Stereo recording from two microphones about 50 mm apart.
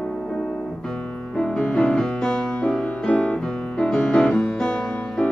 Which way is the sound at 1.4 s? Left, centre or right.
Centre.